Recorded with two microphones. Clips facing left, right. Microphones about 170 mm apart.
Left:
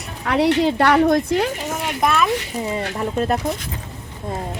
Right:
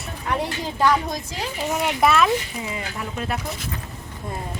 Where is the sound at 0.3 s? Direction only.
80° left; by 1.5 s 60° left (ahead or behind).